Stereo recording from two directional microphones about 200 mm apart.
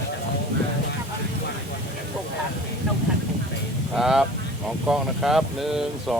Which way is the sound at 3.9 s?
Centre (ahead or behind).